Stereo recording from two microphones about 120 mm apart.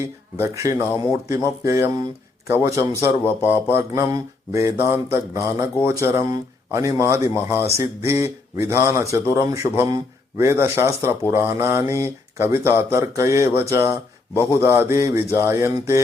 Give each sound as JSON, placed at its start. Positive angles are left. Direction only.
{"t": 0.0, "sound": "speech", "side_deg": -20}